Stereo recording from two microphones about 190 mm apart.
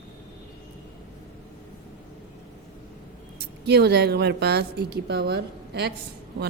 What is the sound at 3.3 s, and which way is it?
A woman's voice, 60° right (ahead or behind).